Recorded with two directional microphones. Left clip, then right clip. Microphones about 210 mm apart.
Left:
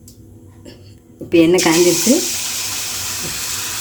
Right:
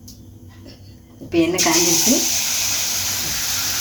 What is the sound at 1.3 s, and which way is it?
Speech, 50° left (ahead or behind).